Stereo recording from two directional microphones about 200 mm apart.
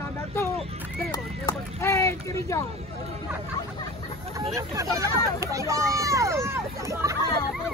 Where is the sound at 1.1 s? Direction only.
20° left (ahead or behind).